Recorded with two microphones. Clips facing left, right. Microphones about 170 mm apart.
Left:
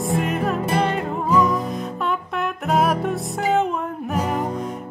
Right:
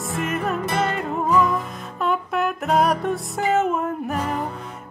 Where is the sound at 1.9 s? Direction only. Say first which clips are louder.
Right 2 dB; centre (ahead or behind).